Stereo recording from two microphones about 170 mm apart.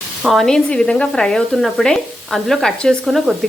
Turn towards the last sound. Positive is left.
turn(degrees=0)  # may be behind; listen again after turning